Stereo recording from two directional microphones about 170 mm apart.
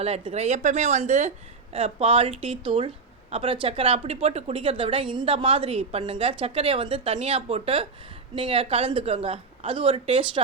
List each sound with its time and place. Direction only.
0.0 s speech: 35° right (ahead or behind)